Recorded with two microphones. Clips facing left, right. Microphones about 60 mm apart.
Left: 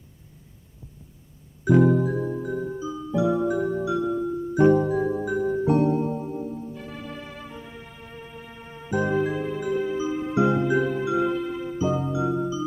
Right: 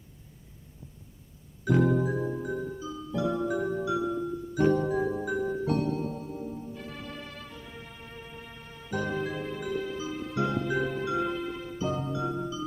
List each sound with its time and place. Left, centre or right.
1.6 s music: centre
2.6 s music: centre
5.6 s music: left
6.4 s music: centre
10.7 s music: centre